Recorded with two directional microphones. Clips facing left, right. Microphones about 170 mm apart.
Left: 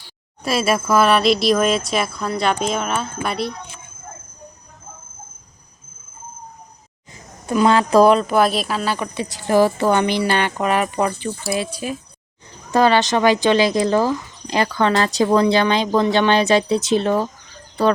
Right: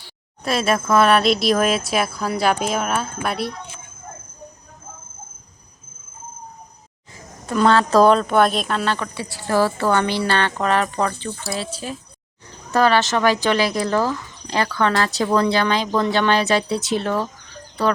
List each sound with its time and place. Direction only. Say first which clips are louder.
0.4 s speech: left 1 dB; 5° left (ahead or behind)
7.1 s speech: left 3 dB; 10° left (ahead or behind)
9.1 s a woman's voice: left 6 dB; 20° left (ahead or behind)